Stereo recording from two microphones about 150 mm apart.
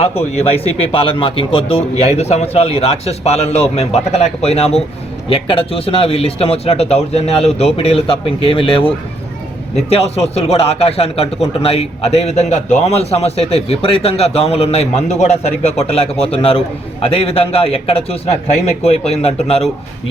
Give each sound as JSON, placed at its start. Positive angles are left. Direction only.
{"t": 0.0, "sound": "a man's voice", "side_deg": 45}
{"t": 9.9, "sound": "a man's voice", "side_deg": 45}